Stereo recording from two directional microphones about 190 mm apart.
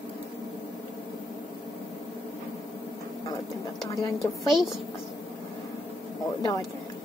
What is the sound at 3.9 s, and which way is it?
Speech, 20° left (ahead or behind).